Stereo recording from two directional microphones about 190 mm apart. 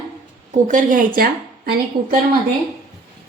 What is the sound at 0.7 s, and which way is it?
Speech, 45° right (ahead or behind).